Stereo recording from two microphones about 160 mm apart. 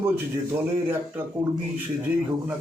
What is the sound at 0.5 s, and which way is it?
Speech, 15° right (ahead or behind).